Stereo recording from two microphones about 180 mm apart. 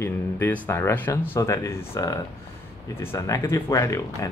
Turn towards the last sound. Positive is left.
turn(degrees=15)  # may be behind; listen again after turning